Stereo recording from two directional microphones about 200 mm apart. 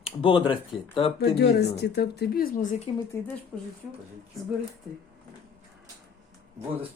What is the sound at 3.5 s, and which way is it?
Speech, centre (ahead or behind).